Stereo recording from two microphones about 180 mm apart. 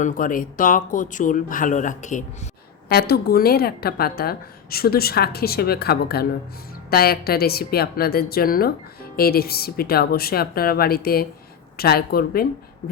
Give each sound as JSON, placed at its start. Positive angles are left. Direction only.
{"t": 0.0, "sound": "speech", "side_deg": 50}
{"t": 2.9, "sound": "speech", "side_deg": 60}